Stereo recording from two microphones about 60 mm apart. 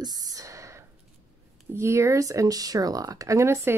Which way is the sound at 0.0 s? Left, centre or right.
Right.